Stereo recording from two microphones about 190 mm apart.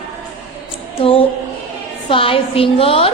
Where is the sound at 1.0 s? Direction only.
30° left (ahead or behind).